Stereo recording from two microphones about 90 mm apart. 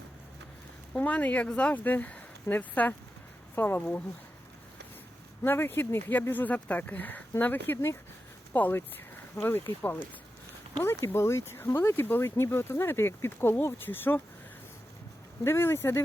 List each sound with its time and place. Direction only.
0.9 s speech: 15° left (ahead or behind)
5.4 s speech: 25° left (ahead or behind)
15.4 s speech: 30° left (ahead or behind)